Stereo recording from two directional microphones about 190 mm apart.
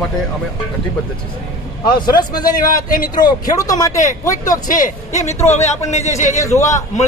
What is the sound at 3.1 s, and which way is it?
Speech, 20° left (ahead or behind).